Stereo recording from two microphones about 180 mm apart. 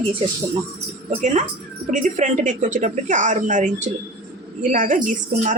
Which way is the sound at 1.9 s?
45° right (ahead or behind).